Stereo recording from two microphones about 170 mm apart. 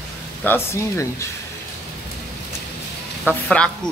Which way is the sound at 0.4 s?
15° left (ahead or behind).